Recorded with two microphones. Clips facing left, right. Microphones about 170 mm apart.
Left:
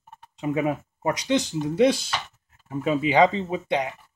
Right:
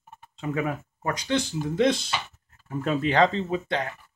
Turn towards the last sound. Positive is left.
turn(degrees=15)  # may be behind; listen again after turning